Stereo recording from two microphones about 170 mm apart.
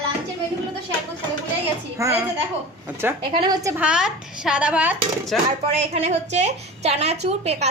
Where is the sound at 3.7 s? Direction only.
5° right (ahead or behind).